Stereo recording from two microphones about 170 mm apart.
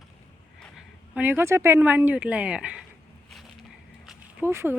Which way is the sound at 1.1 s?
10° right (ahead or behind).